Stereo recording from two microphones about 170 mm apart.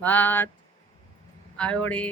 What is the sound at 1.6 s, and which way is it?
Speech, 5° left (ahead or behind).